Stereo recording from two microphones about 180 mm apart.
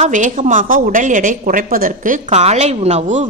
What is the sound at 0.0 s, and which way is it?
Speech, 45° right (ahead or behind).